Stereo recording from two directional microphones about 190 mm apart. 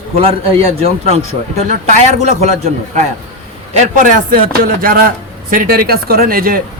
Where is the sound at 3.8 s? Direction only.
50° right (ahead or behind).